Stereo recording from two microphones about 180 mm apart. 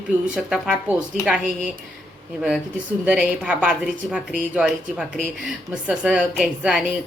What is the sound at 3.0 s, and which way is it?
A woman's voice, 5° right (ahead or behind).